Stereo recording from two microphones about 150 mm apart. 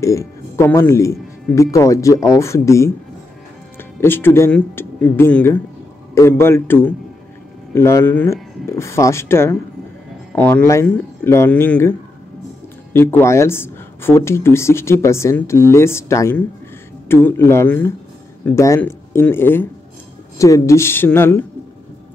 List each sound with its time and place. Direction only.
0.0 s speech: 20° left (ahead or behind)
4.0 s speech: 15° left (ahead or behind)
12.9 s speech: 15° left (ahead or behind)